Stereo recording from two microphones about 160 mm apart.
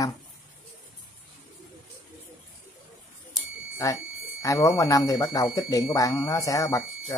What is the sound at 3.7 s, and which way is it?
Speech, 20° left (ahead or behind).